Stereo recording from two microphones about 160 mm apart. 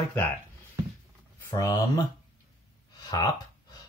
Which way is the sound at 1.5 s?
25° left (ahead or behind).